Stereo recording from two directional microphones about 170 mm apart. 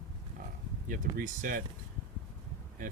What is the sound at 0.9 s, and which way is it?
Speech, 55° right (ahead or behind).